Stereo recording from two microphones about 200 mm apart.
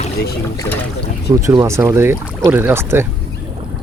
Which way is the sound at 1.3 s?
15° right (ahead or behind).